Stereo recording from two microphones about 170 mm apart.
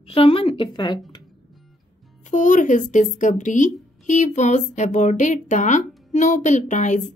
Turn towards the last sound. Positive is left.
turn(degrees=45)  # may be behind; listen again after turning